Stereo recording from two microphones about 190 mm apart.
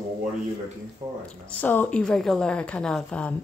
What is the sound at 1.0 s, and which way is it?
Speech, 35° right (ahead or behind).